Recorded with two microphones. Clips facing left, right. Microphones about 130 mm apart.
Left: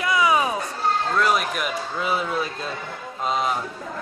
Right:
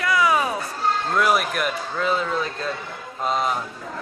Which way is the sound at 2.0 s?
10° left (ahead or behind).